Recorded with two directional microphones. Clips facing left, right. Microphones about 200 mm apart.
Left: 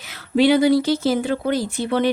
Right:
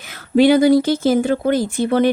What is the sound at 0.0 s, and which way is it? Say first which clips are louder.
A woman's voice: right 4 dB; 50° right (ahead or behind).